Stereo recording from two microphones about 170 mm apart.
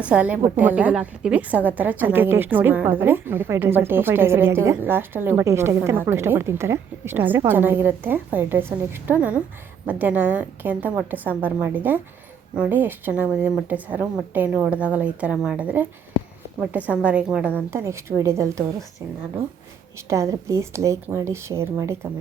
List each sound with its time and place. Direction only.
0.0 s a woman's voice: 10° right (ahead or behind)
20.0 s a woman's voice: 15° right (ahead or behind)